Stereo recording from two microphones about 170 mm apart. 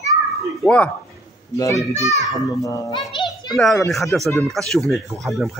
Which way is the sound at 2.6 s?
20° left (ahead or behind).